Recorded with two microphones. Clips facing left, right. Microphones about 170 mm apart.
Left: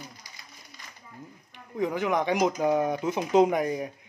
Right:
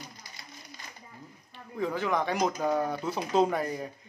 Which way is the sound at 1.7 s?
15° left (ahead or behind).